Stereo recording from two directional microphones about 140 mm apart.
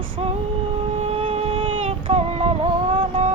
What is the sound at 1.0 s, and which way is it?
Music, 45° right (ahead or behind).